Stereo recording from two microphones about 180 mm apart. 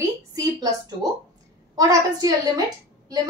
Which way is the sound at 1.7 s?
20° right (ahead or behind).